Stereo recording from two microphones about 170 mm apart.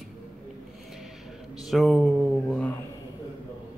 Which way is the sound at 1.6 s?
Centre (ahead or behind).